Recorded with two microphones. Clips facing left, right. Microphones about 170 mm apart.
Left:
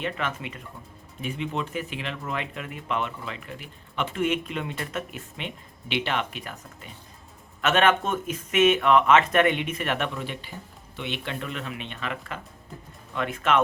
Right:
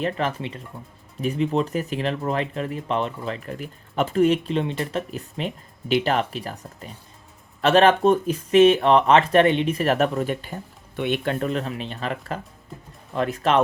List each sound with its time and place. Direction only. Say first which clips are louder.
0.0 s speech: right 5 dB; 35° right (ahead or behind)